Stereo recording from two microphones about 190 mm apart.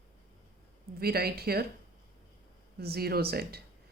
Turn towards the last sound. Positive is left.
turn(degrees=-55)  # may be behind; listen again after turning